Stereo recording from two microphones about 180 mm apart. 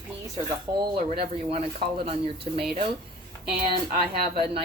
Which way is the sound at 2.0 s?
30° right (ahead or behind).